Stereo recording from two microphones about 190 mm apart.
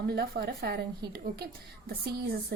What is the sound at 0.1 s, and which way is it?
A woman's voice, 55° right (ahead or behind).